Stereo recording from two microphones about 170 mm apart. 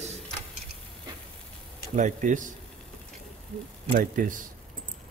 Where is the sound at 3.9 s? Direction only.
50° right (ahead or behind).